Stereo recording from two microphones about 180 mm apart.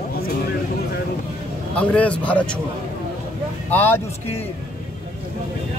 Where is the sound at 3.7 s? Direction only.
10° left (ahead or behind).